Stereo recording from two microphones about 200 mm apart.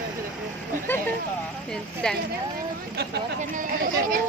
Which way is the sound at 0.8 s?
10° left (ahead or behind).